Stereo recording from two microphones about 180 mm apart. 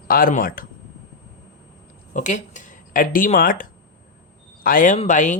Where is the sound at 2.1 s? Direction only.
45° left (ahead or behind).